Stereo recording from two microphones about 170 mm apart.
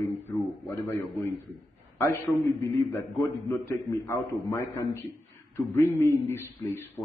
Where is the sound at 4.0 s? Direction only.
15° left (ahead or behind).